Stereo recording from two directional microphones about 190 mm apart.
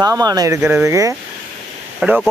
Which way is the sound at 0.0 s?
20° right (ahead or behind).